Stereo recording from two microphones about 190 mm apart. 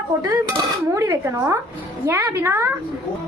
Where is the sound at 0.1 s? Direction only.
15° right (ahead or behind).